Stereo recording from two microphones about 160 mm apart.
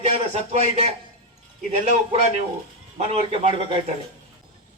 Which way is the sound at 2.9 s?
40° right (ahead or behind).